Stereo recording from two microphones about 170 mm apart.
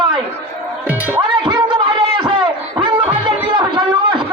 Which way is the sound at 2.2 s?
25° right (ahead or behind).